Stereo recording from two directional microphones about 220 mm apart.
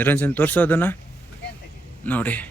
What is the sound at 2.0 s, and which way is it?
Speech, 5° left (ahead or behind).